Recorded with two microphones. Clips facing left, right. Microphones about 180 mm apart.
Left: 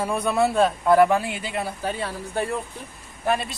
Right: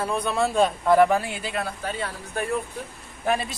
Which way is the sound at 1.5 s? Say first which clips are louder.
Left 2 dB; 25° left (ahead or behind).